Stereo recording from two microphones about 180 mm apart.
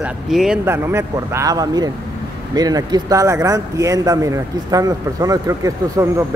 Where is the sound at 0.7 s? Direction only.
15° right (ahead or behind).